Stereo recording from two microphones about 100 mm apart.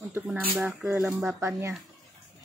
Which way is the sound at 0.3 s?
15° right (ahead or behind).